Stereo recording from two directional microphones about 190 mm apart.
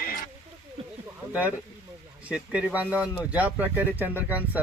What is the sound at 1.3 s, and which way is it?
Speech, 5° right (ahead or behind).